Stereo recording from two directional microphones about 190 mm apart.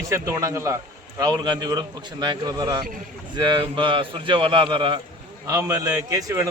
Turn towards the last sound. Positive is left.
turn(degrees=-15)  # may be behind; listen again after turning